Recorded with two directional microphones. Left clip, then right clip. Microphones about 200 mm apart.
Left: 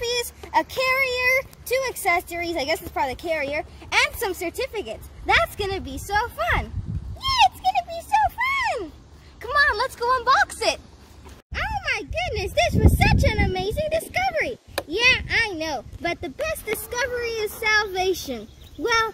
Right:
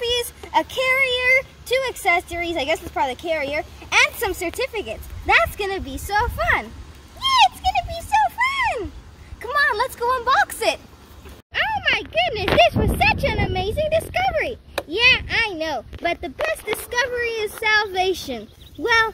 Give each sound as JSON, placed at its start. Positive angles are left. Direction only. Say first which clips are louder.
{"t": 0.0, "sound": "speech", "louder": "right 3 dB", "side_deg": 5}
{"t": 7.2, "sound": "a sound", "louder": "right 3 dB", "side_deg": 5}
{"t": 9.4, "sound": "speech", "louder": "right 1 dB", "side_deg": 0}
{"t": 11.5, "sound": "speech", "louder": "right 6 dB", "side_deg": 20}